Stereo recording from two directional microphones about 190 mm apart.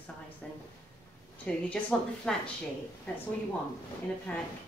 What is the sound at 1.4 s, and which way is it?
Speech, 5° left (ahead or behind).